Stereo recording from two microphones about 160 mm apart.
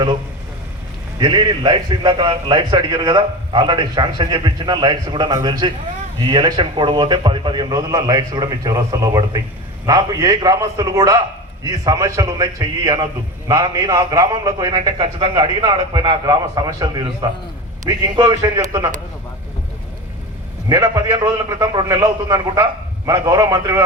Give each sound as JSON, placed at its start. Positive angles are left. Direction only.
{"t": 1.2, "sound": "a man's voice", "side_deg": -25}
{"t": 20.7, "sound": "a man's voice", "side_deg": -20}